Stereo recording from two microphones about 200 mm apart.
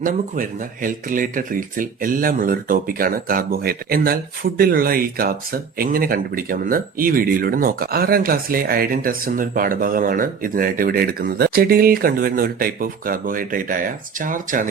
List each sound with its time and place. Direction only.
0.0 s speech: 40° right (ahead or behind)